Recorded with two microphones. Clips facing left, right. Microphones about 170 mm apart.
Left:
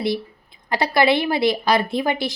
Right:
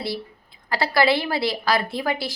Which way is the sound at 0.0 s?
20° left (ahead or behind).